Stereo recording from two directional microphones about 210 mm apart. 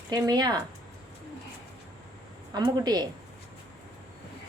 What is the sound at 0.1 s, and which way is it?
Speech, 20° right (ahead or behind).